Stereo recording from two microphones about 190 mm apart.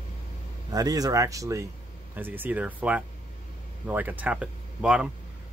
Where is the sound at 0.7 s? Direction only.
20° right (ahead or behind).